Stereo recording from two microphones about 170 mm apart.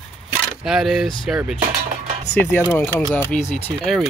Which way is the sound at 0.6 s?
Centre (ahead or behind).